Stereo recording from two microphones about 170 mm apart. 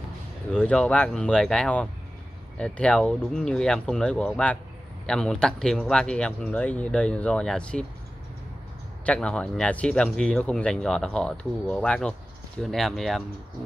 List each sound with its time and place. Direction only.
0.5 s speech: 5° left (ahead or behind)
9.0 s speech: 5° left (ahead or behind)